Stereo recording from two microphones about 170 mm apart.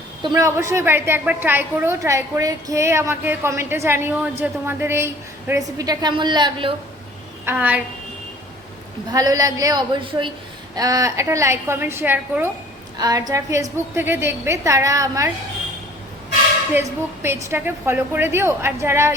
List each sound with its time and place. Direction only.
0.2 s a woman's voice: 25° right (ahead or behind)
7.4 s a woman's voice: 10° right (ahead or behind)
9.1 s a woman's voice: 20° right (ahead or behind)
13.0 s a woman's voice: 20° right (ahead or behind)
17.2 s a woman's voice: 15° right (ahead or behind)